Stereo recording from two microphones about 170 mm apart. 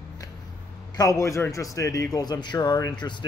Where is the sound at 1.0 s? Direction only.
20° left (ahead or behind).